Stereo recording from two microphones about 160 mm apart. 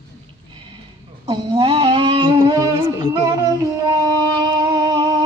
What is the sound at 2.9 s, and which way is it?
Music, 20° right (ahead or behind).